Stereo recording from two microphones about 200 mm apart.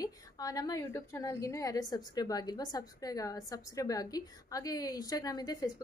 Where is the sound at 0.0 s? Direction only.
20° left (ahead or behind).